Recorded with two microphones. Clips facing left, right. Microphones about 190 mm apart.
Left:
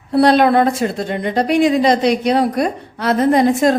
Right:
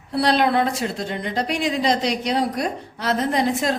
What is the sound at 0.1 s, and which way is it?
A woman's voice, 55° left (ahead or behind).